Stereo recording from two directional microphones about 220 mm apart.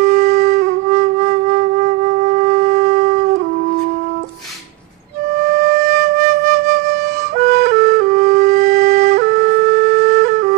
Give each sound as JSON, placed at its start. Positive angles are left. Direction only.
{"t": 0.2, "sound": "wind instrument", "side_deg": -45}
{"t": 5.5, "sound": "flute", "side_deg": -45}